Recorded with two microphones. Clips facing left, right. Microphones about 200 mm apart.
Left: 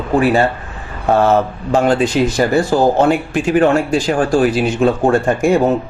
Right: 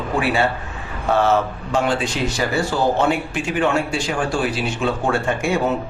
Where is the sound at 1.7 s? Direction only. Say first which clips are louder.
Left 8 dB; 40° left (ahead or behind).